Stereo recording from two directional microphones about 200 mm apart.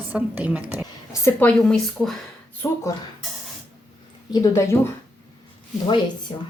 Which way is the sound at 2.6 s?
15° left (ahead or behind).